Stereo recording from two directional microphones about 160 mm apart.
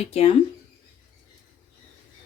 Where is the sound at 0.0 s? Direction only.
40° left (ahead or behind).